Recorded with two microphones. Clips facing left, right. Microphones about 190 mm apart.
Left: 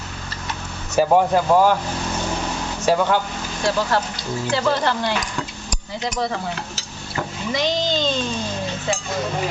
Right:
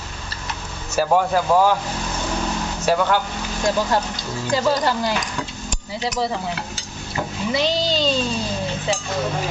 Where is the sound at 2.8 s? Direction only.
10° left (ahead or behind).